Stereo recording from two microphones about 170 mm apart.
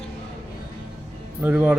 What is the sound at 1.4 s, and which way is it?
Speech, 10° right (ahead or behind).